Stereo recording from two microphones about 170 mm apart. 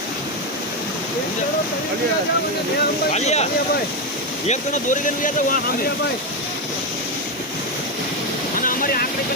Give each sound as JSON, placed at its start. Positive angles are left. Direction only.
{"t": 3.1, "sound": "speech", "side_deg": 40}
{"t": 4.4, "sound": "speech", "side_deg": 45}
{"t": 8.5, "sound": "boat", "side_deg": 55}